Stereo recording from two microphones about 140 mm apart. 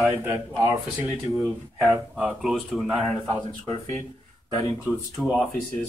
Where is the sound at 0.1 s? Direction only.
20° right (ahead or behind).